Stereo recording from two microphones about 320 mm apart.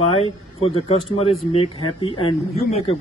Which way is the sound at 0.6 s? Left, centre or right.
Centre.